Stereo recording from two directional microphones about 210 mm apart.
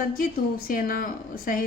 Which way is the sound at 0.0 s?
45° left (ahead or behind).